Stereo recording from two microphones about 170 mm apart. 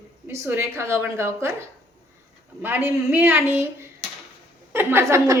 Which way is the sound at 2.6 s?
10° right (ahead or behind).